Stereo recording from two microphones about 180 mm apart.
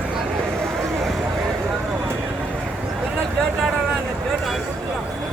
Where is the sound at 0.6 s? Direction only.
15° right (ahead or behind).